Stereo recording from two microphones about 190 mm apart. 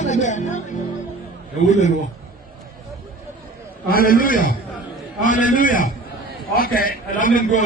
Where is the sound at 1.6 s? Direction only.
40° left (ahead or behind).